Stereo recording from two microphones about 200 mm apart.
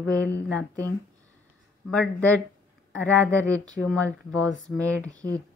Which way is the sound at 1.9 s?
5° left (ahead or behind).